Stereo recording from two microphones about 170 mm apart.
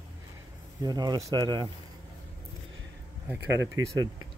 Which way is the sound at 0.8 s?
25° right (ahead or behind).